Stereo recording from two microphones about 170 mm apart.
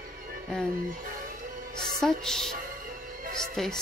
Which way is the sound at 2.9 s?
55° right (ahead or behind).